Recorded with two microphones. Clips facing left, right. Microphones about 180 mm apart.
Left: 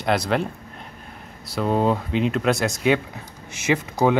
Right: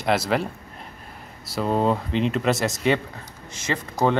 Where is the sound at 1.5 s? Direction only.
Centre (ahead or behind).